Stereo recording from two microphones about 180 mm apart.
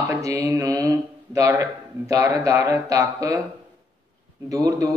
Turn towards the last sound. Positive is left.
turn(degrees=-20)  # may be behind; listen again after turning